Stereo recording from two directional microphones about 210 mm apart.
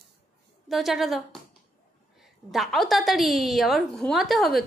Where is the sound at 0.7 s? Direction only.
Centre (ahead or behind).